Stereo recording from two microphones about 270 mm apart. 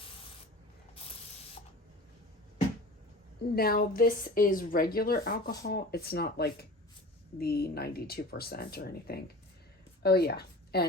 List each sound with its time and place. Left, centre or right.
3.5 s a woman's voice: left